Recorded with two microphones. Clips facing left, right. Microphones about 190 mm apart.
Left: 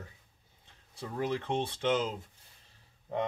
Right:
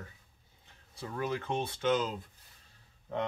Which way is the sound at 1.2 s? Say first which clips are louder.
Left 2 dB; 30° left (ahead or behind).